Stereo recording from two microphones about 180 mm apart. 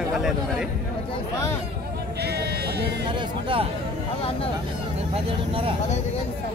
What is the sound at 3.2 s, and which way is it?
Speech, 30° right (ahead or behind).